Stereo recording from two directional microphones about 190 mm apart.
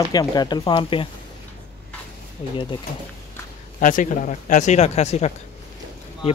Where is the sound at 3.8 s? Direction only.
45° left (ahead or behind).